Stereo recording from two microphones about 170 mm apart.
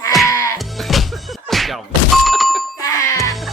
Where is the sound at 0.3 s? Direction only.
20° left (ahead or behind).